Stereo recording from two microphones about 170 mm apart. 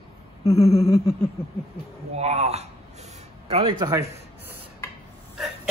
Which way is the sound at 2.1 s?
40° right (ahead or behind).